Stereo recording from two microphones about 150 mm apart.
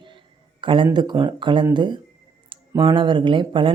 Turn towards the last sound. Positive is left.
turn(degrees=-35)  # may be behind; listen again after turning